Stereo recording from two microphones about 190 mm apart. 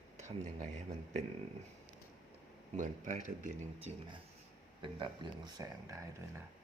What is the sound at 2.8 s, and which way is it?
Speech, 40° right (ahead or behind).